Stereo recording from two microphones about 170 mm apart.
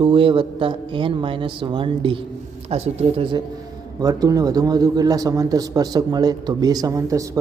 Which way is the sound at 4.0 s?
20° right (ahead or behind).